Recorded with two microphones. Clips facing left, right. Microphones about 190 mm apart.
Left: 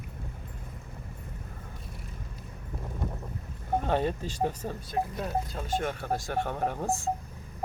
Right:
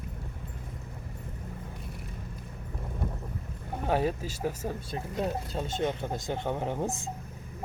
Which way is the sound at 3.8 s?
5° right (ahead or behind).